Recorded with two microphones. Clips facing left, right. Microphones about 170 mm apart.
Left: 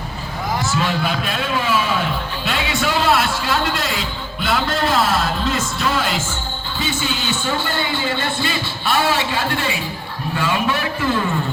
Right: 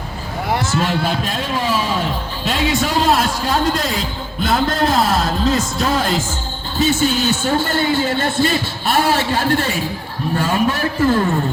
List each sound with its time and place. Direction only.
0.8 s a man's voice: 35° right (ahead or behind)